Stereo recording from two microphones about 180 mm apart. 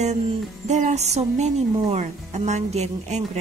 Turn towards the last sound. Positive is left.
turn(degrees=-40)  # may be behind; listen again after turning